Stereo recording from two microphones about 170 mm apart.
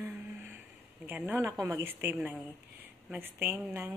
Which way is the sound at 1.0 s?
10° right (ahead or behind).